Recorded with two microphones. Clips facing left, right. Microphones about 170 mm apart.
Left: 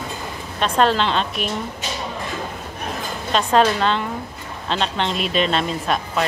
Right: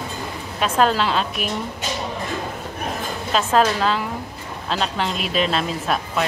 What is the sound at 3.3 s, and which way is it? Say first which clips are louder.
Speech: left 1 dB; 5° right (ahead or behind).